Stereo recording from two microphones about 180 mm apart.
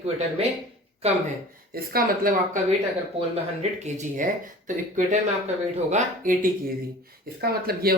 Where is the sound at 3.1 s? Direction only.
40° right (ahead or behind).